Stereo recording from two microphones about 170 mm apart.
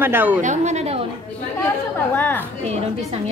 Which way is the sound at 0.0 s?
10° right (ahead or behind).